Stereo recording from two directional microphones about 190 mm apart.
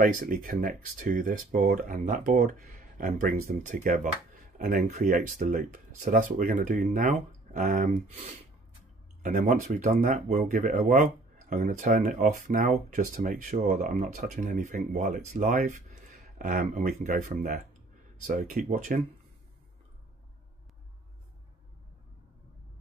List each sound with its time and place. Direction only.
0.0 s speech: 45° right (ahead or behind)
9.2 s speech: 45° right (ahead or behind)